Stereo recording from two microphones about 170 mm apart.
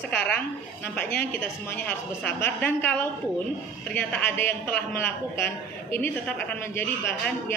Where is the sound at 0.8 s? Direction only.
10° left (ahead or behind).